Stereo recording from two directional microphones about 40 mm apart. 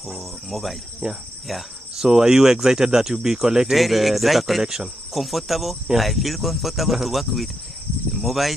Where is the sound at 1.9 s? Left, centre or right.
Centre.